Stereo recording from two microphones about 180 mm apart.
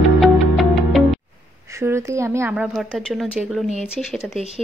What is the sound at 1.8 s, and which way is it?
A woman's voice, 15° right (ahead or behind).